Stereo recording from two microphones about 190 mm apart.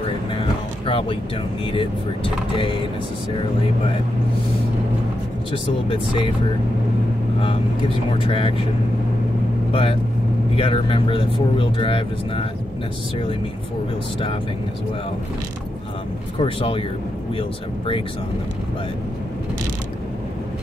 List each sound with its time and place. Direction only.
0.3 s a sound: 30° left (ahead or behind)
1.7 s speech: 30° left (ahead or behind)
5.5 s speech: 30° left (ahead or behind)
8.1 s speech: 30° left (ahead or behind)
9.7 s speech: 30° left (ahead or behind)
16.3 s speech: 25° left (ahead or behind)